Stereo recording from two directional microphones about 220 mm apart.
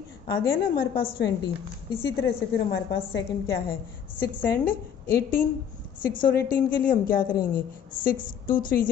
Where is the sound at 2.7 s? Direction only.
55° left (ahead or behind).